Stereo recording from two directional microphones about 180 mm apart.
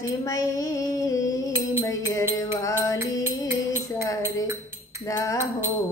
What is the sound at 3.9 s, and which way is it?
Music, 20° left (ahead or behind).